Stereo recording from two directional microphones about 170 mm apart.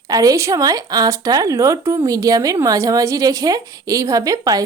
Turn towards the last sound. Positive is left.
turn(degrees=-20)  # may be behind; listen again after turning